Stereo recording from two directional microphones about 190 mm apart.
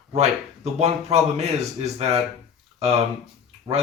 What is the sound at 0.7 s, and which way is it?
Speech, 35° right (ahead or behind).